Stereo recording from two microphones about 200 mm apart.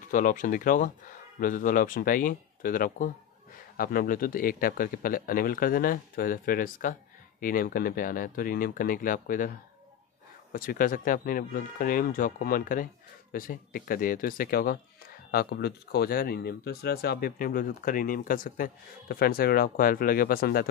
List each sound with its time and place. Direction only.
0.1 s speech: 40° left (ahead or behind)
10.5 s speech: 45° left (ahead or behind)